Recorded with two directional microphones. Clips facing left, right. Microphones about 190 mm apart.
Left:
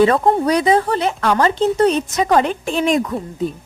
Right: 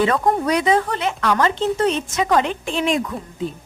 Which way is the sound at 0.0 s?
35° left (ahead or behind).